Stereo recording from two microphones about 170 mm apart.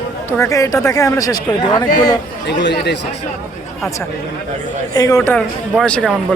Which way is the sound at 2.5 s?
85° left.